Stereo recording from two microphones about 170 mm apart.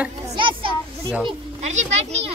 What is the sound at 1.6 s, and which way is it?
Speech, 40° right (ahead or behind).